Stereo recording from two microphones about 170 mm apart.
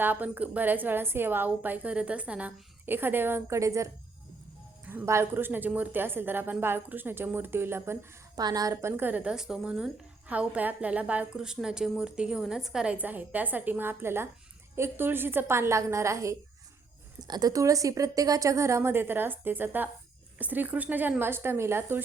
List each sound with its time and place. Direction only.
0.0 s a woman's voice: 10° right (ahead or behind)